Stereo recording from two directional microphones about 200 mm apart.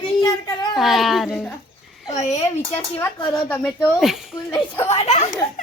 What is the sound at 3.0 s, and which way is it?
Speech, 20° left (ahead or behind).